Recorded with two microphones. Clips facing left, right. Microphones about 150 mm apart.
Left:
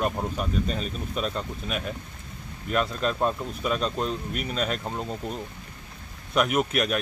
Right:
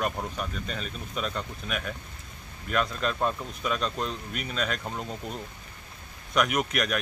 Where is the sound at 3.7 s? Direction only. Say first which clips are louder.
Left 3 dB; 30° left (ahead or behind).